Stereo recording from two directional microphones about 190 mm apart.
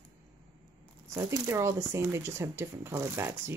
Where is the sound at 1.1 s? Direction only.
15° right (ahead or behind).